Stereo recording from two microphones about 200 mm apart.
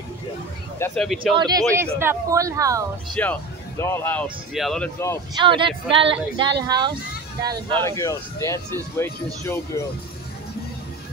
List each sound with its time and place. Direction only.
0.7 s speech: 10° left (ahead or behind)
1.3 s speech: 20° right (ahead or behind)
3.2 s speech: 10° left (ahead or behind)
5.3 s speech: 25° right (ahead or behind)
7.8 s speech: 15° left (ahead or behind)